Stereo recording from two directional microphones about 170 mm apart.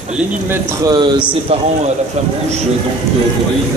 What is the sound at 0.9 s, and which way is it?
Speech, 25° right (ahead or behind).